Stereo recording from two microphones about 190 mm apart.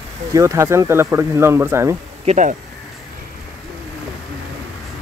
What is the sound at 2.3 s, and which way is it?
Speech, 40° right (ahead or behind).